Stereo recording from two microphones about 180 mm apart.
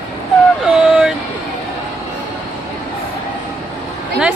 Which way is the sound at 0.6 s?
5° right (ahead or behind).